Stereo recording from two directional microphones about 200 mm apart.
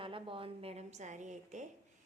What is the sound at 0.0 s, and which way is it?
A woman's voice, 25° right (ahead or behind).